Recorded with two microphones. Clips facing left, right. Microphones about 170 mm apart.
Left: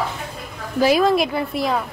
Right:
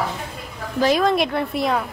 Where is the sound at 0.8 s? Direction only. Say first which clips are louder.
Left 2 dB; 5° left (ahead or behind).